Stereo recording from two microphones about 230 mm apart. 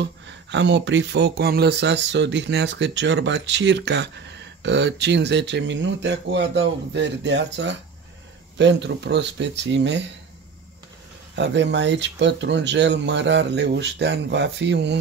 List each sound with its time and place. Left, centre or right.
0.0 s speech: right
11.3 s speech: right